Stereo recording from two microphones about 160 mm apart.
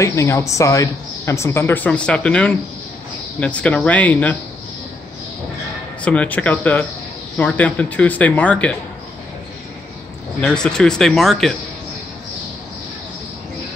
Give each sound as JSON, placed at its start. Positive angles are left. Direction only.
{"t": 0.0, "sound": "speech", "side_deg": 20}
{"t": 6.0, "sound": "speech", "side_deg": 10}
{"t": 10.4, "sound": "speech", "side_deg": 5}